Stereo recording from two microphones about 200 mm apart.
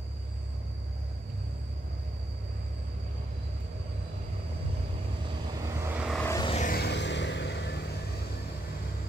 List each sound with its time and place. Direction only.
5.8 s vehicle: 10° right (ahead or behind)
6.2 s vehicle: 15° left (ahead or behind)
6.5 s music: 40° left (ahead or behind)
6.8 s vehicle: 60° left (ahead or behind)